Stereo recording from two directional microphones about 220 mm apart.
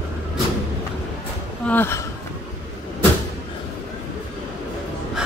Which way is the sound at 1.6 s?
10° left (ahead or behind).